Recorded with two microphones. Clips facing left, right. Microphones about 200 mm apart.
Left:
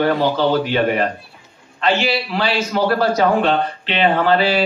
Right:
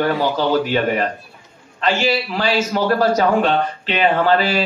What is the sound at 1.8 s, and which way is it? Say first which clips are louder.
Speech: even; 40° right (ahead or behind).